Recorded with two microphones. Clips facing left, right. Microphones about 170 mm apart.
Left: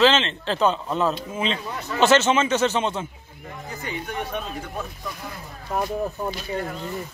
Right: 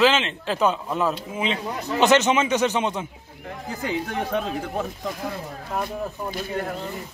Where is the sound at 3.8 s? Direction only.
90° right.